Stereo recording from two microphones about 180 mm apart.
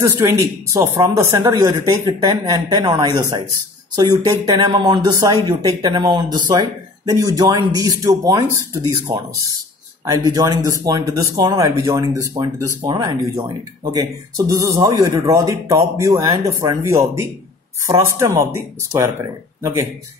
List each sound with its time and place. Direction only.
0.0 s speech: 15° right (ahead or behind)
10.0 s speech: 20° right (ahead or behind)